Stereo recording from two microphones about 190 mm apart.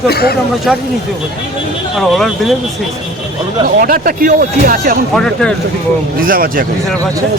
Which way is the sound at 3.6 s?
50° right (ahead or behind).